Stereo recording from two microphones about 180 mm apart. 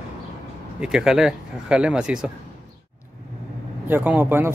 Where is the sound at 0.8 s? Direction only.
5° right (ahead or behind).